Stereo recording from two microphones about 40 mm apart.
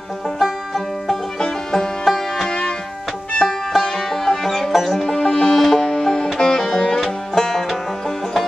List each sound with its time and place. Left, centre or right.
0.4 s music: centre
1.4 s music: centre
5.0 s music: centre